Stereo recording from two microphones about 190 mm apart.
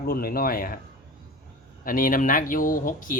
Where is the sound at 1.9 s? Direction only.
45° left (ahead or behind).